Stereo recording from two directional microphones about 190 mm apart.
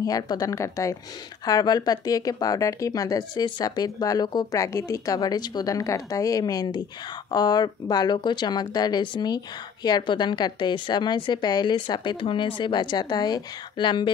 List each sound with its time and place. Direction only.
0.0 s a woman's voice: 20° left (ahead or behind)